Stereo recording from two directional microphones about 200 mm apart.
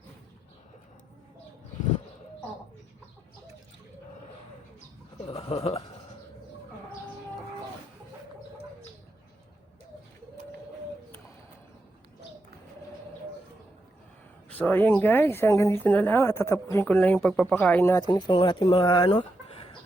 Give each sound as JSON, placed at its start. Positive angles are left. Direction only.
{"t": 5.3, "sound": "a sound", "side_deg": 30}
{"t": 14.6, "sound": "speech", "side_deg": 10}
{"t": 18.1, "sound": "speech", "side_deg": 25}